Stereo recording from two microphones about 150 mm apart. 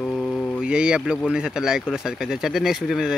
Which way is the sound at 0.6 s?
5° right (ahead or behind).